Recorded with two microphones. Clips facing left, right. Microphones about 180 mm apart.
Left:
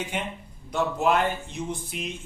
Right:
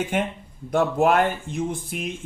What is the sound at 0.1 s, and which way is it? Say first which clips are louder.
Speech: right 7 dB; 50° right (ahead or behind).